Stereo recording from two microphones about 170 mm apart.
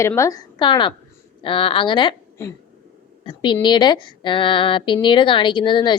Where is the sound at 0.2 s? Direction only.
20° left (ahead or behind).